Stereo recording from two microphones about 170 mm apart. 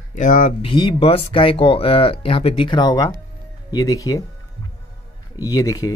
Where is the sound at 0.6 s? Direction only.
30° left (ahead or behind).